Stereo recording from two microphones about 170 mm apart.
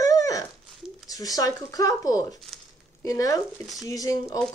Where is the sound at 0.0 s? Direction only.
20° left (ahead or behind).